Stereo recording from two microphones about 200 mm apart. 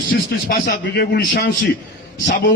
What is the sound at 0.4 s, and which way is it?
Speech, 50° left (ahead or behind).